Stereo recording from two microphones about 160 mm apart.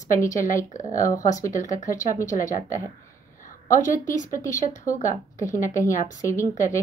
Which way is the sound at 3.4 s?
55° left (ahead or behind).